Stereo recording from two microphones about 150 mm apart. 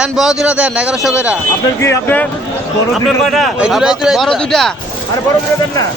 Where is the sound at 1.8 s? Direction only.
15° left (ahead or behind).